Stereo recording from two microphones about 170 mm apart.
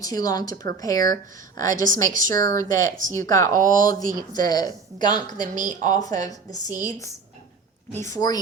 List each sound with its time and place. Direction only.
0.0 s a woman's voice: 20° left (ahead or behind)
5.5 s a woman's voice: 45° right (ahead or behind)
6.0 s a woman's voice: 20° left (ahead or behind)
8.1 s a woman's voice: 20° left (ahead or behind)